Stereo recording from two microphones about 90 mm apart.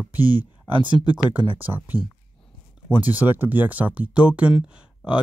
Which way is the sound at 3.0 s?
20° right (ahead or behind).